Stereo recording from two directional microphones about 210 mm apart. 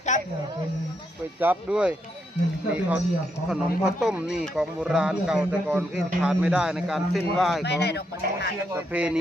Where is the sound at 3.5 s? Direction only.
5° right (ahead or behind).